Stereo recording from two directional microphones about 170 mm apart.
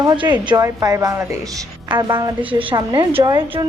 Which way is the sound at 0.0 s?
25° right (ahead or behind).